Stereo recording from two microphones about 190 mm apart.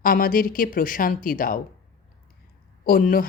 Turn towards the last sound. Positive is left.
turn(degrees=50)  # may be behind; listen again after turning